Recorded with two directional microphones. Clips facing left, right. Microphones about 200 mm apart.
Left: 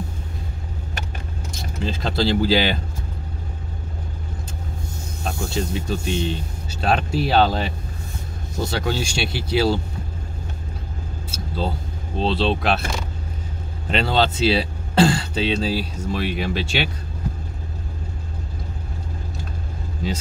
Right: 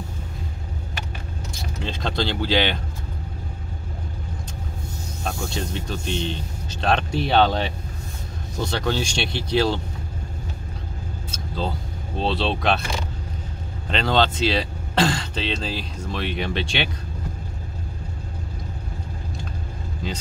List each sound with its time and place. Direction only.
1.5 s speech: centre (ahead or behind)
5.2 s speech: centre (ahead or behind)
11.3 s vehicle: 5° left (ahead or behind)
12.2 s speech: centre (ahead or behind)
13.8 s speech: 5° left (ahead or behind)